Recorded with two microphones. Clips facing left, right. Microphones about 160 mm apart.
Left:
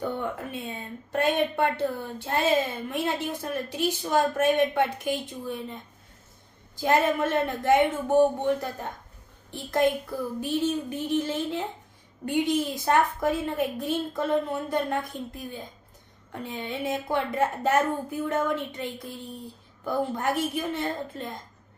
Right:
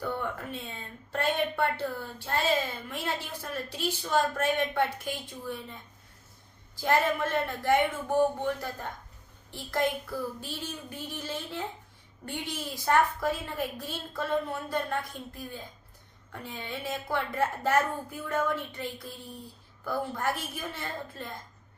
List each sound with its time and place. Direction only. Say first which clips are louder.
0.0 s a woman's voice: left 3 dB; 20° left (ahead or behind)
16.3 s a woman's voice: left 5 dB; 20° left (ahead or behind)